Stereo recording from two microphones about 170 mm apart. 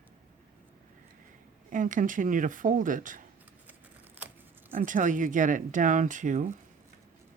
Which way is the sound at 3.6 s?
10° right (ahead or behind).